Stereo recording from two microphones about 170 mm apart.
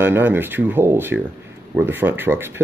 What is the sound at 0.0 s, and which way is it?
Speech, 10° right (ahead or behind).